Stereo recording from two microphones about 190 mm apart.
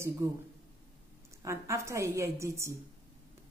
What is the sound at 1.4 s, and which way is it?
A woman's voice, 15° right (ahead or behind).